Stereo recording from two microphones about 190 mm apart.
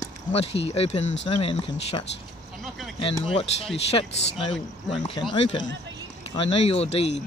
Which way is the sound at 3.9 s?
30° left (ahead or behind).